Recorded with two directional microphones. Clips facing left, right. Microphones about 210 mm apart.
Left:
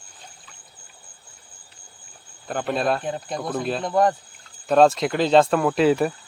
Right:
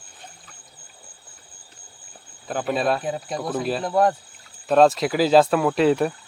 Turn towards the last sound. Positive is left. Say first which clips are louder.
# even
turn(degrees=0)  # may be behind; listen again after turning